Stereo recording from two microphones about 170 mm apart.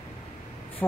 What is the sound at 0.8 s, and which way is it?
Speech, 10° left (ahead or behind).